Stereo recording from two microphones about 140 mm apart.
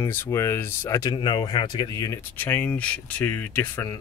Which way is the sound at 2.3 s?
15° left (ahead or behind).